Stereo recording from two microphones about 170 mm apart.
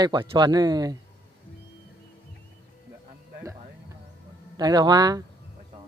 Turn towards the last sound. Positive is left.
turn(degrees=-25)  # may be behind; listen again after turning